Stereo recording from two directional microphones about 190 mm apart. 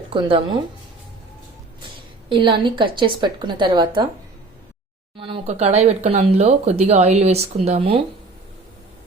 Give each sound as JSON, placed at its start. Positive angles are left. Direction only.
{"t": 0.1, "sound": "a woman's voice", "side_deg": -25}
{"t": 2.3, "sound": "a woman's voice", "side_deg": -25}
{"t": 5.1, "sound": "speech", "side_deg": -25}